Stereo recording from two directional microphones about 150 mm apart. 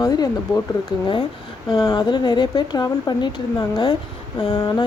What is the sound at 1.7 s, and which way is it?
Speech, 30° left (ahead or behind).